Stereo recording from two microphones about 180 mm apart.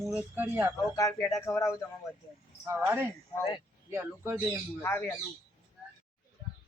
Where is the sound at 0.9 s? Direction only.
15° left (ahead or behind).